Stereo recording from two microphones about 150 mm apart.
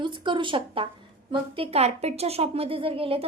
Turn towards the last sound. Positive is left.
turn(degrees=-40)  # may be behind; listen again after turning